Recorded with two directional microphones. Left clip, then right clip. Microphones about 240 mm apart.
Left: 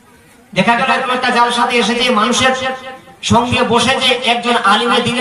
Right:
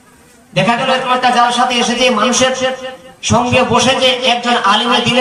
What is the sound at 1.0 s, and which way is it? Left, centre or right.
A man's voice, left.